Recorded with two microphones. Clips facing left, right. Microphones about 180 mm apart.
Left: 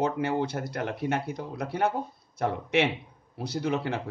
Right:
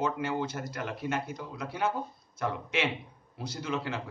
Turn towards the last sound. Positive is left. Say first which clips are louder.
# left 5 dB
turn(degrees=60)  # may be behind; listen again after turning